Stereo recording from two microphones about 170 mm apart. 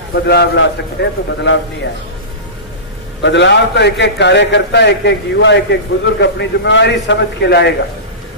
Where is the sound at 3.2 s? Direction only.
90° left.